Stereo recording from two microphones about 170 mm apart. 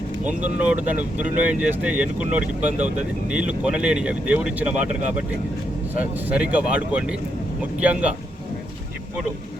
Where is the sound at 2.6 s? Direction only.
45° right (ahead or behind).